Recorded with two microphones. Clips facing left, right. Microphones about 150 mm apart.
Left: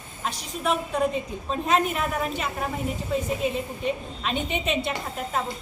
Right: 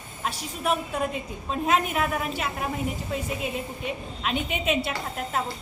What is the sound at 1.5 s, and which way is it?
Speech, 5° right (ahead or behind).